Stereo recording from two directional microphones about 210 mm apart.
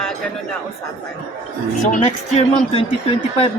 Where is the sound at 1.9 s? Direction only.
35° left (ahead or behind).